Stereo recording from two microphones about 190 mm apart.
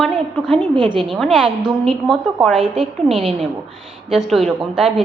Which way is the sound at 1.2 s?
5° right (ahead or behind).